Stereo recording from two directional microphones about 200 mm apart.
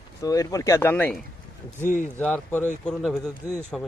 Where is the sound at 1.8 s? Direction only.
40° left (ahead or behind).